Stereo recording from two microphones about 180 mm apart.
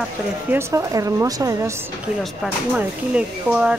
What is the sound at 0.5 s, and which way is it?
Speech, 20° right (ahead or behind).